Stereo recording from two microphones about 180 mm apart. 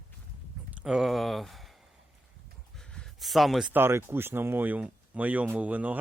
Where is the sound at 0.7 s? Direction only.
5° right (ahead or behind).